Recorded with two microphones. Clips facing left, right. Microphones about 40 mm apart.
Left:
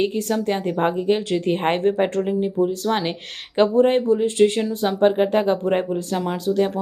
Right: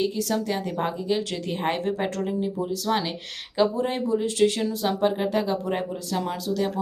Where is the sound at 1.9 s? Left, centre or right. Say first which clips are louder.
Left 6 dB; left.